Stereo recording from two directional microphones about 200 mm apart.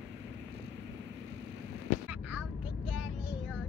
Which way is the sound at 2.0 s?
5° right (ahead or behind).